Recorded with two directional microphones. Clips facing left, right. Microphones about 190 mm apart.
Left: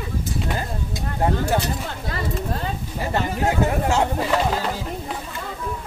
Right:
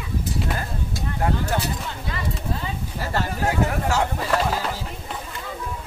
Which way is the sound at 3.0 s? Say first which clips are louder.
Left 2 dB; 15° left (ahead or behind).